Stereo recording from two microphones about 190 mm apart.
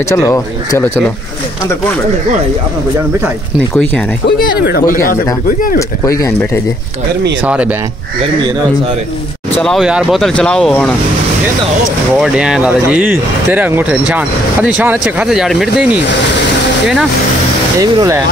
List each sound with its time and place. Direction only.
0.1 s speech: 15° left (ahead or behind)
4.6 s speech: 50° left (ahead or behind)
5.8 s speech: 15° left (ahead or behind)
7.4 s speech: 5° right (ahead or behind)
9.6 s speech: centre (ahead or behind)
12.2 s speech: 5° right (ahead or behind)
17.7 s speech: 15° right (ahead or behind)